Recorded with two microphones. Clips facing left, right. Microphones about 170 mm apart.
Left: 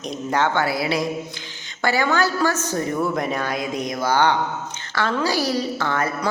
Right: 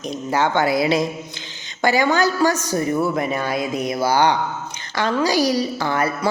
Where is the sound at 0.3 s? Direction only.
10° right (ahead or behind).